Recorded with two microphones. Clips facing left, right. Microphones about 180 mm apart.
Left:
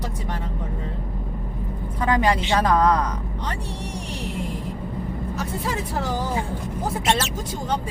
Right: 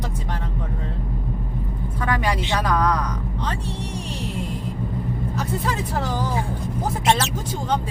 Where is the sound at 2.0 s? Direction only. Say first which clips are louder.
Left 3 dB; 25° left (ahead or behind).